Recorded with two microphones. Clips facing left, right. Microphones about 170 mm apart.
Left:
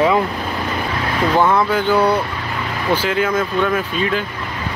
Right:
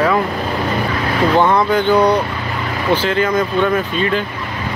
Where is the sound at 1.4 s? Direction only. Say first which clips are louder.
Right 2 dB; 5° left (ahead or behind).